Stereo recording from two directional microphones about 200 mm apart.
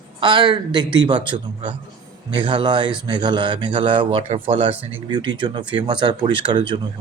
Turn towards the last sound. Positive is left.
turn(degrees=-25)  # may be behind; listen again after turning